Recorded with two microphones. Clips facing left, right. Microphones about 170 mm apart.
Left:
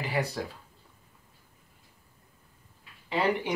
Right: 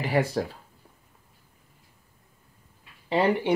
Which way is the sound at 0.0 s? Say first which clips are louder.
Right 6 dB; 40° right (ahead or behind).